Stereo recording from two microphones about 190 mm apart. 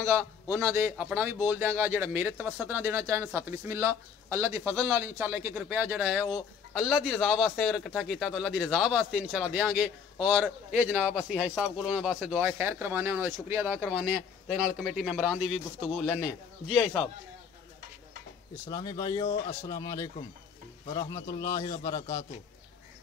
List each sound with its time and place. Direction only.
0.0 s a man's voice: 10° right (ahead or behind)
18.7 s a man's voice: 20° left (ahead or behind)